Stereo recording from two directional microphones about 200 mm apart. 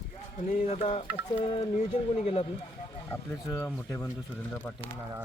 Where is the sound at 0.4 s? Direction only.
40° left (ahead or behind).